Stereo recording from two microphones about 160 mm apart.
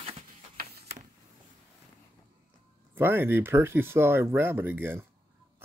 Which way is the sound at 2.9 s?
15° right (ahead or behind).